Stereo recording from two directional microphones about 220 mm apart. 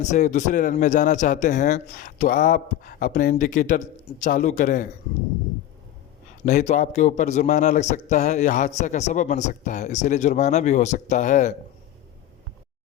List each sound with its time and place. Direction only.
0.0 s a man's voice: 35° left (ahead or behind)
6.4 s a man's voice: 35° left (ahead or behind)